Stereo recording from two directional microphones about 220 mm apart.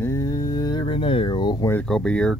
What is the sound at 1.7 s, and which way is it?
Speech, 5° left (ahead or behind).